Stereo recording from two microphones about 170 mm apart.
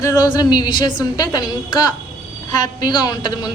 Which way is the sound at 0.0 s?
20° left (ahead or behind).